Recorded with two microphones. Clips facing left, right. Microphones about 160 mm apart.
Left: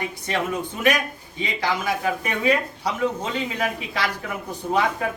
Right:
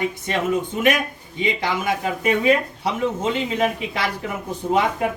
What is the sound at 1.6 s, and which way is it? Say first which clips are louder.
Speech: right 1 dB; 20° right (ahead or behind).